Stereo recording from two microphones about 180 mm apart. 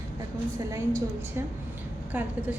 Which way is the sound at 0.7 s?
15° right (ahead or behind).